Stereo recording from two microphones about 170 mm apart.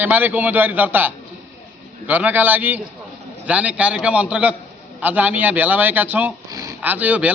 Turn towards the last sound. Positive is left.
turn(degrees=-10)  # may be behind; listen again after turning